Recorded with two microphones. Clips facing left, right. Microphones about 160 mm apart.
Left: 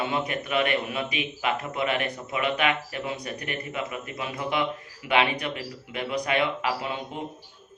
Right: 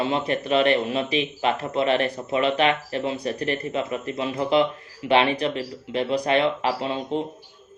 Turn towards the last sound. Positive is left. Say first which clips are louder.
# right 6 dB
turn(degrees=-30)  # may be behind; listen again after turning